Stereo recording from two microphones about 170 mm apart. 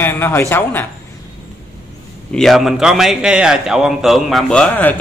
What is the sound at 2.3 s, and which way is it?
A man's voice, centre (ahead or behind).